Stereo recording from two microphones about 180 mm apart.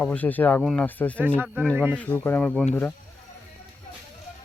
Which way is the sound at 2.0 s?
10° left (ahead or behind).